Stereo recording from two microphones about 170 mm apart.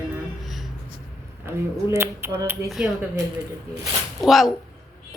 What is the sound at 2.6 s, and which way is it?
Speech, centre (ahead or behind).